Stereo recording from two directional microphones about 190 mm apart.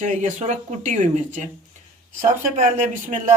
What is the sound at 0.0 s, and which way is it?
A woman's voice, 40° right (ahead or behind).